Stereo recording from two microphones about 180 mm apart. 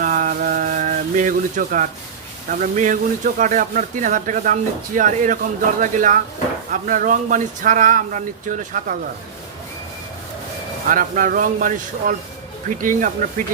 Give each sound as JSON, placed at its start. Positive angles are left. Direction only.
{"t": 0.0, "sound": "a sound", "side_deg": -45}
{"t": 2.5, "sound": "speech", "side_deg": -45}
{"t": 10.8, "sound": "speech", "side_deg": -50}